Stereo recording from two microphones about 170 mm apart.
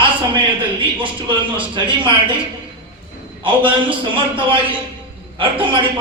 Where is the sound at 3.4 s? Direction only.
30° right (ahead or behind).